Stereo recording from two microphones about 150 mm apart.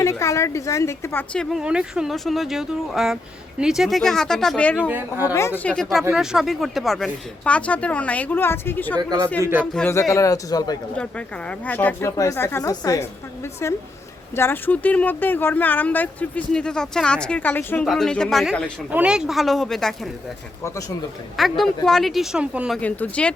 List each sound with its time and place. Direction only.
0.0 s a woman's voice: 20° left (ahead or behind)
1.3 s speech: centre (ahead or behind)
4.9 s speech: 15° right (ahead or behind)
5.3 s speech: 15° left (ahead or behind)
5.7 s speech: 5° left (ahead or behind)
9.0 s speech: 25° right (ahead or behind)
9.4 s speech: 15° right (ahead or behind)
9.7 s a man's voice: 15° left (ahead or behind)
11.6 s speech: 10° left (ahead or behind)
17.8 s speech: 5° left (ahead or behind)
18.9 s speech: 10° right (ahead or behind)
21.6 s speech: centre (ahead or behind)
22.8 s speech: 10° left (ahead or behind)